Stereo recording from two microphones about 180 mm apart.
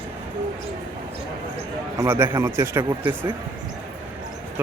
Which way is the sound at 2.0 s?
10° right (ahead or behind).